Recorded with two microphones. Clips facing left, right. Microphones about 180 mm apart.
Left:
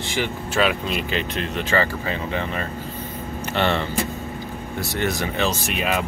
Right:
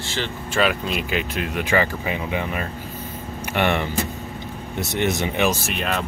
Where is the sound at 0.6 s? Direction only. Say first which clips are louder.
Even; centre (ahead or behind); by 5.6 s 20° right (ahead or behind).